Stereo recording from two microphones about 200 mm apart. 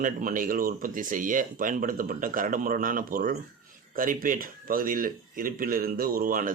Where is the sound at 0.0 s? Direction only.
45° right (ahead or behind).